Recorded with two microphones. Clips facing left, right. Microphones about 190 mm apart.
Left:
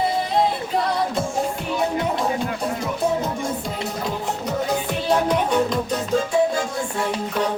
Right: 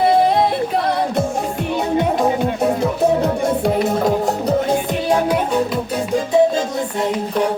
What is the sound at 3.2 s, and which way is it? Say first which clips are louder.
Music: right 8 dB; 65° right (ahead or behind).